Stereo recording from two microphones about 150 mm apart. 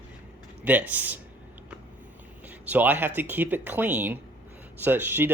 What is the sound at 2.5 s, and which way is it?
Speech, 10° right (ahead or behind).